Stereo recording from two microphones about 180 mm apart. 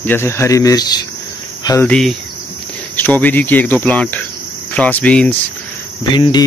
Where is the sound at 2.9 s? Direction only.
10° left (ahead or behind).